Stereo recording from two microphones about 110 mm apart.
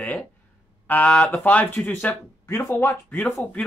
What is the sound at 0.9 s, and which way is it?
Speech, 10° left (ahead or behind).